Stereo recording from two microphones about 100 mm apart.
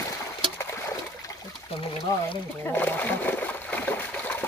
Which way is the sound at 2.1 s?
35° left (ahead or behind).